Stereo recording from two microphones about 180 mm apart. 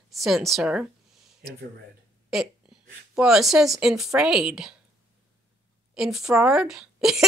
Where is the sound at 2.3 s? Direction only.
Centre (ahead or behind).